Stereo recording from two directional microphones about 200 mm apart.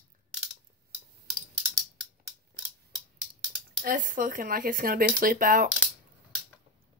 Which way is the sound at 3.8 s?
45° right (ahead or behind).